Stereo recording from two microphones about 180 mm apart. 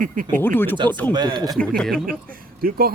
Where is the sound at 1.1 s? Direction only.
25° right (ahead or behind).